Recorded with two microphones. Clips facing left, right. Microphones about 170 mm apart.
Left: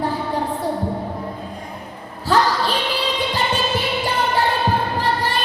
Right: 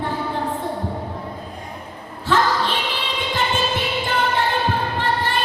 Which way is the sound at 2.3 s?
40° left (ahead or behind).